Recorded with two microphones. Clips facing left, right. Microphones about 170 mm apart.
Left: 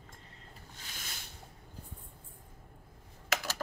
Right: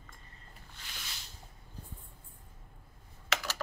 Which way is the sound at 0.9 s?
50° left (ahead or behind).